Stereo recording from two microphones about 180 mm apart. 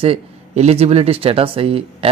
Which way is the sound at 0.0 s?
35° right (ahead or behind).